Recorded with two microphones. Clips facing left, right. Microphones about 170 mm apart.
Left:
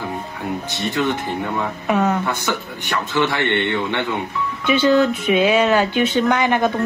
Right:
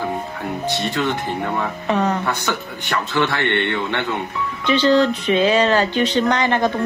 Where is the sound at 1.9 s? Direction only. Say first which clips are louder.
Left 1 dB; 10° left (ahead or behind).